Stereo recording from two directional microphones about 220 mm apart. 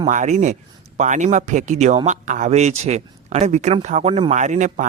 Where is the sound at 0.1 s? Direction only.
35° right (ahead or behind).